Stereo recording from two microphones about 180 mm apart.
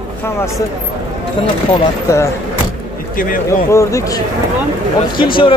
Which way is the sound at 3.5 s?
15° left (ahead or behind).